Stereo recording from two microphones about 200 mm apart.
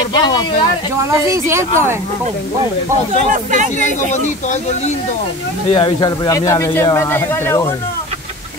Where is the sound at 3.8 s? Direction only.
35° left (ahead or behind).